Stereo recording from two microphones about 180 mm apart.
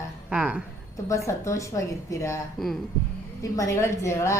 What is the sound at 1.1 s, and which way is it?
A woman's voice, 15° left (ahead or behind).